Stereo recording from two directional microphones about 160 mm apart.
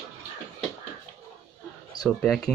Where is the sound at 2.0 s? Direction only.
25° left (ahead or behind).